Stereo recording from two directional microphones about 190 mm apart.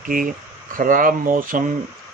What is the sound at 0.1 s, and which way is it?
Speech, 45° right (ahead or behind).